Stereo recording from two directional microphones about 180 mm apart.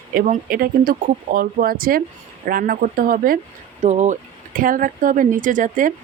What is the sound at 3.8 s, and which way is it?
Speech, 40° right (ahead or behind).